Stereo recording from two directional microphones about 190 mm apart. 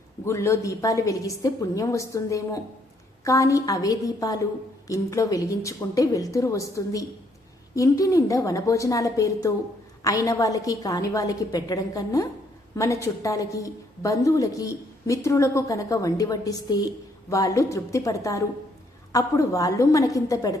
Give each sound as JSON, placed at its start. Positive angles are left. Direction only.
{"t": 0.3, "sound": "a woman's voice", "side_deg": 15}